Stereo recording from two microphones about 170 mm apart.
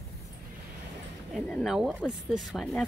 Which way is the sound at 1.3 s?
Centre (ahead or behind).